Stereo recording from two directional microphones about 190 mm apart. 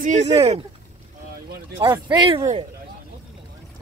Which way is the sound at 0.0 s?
35° right (ahead or behind).